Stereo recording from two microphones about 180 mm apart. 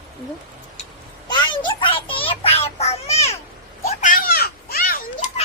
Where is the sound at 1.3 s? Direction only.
25° left (ahead or behind).